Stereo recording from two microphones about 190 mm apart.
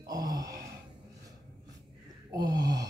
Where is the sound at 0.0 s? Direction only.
20° right (ahead or behind).